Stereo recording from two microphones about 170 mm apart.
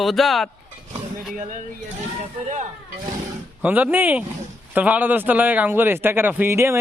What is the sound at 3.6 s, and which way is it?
Speech, 10° right (ahead or behind).